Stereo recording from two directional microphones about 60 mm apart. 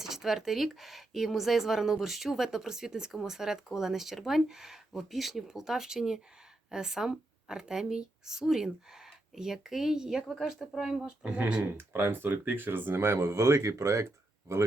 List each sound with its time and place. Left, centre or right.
0.0 s a woman's voice: centre
11.0 s speech: right
11.6 s speech: right